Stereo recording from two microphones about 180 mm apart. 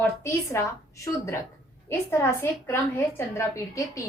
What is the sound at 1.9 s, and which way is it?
A woman's voice, 15° left (ahead or behind).